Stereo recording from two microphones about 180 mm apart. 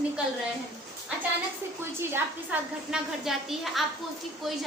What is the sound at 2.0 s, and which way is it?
A woman's voice, 10° right (ahead or behind).